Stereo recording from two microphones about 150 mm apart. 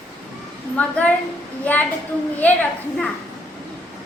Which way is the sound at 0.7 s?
10° left (ahead or behind).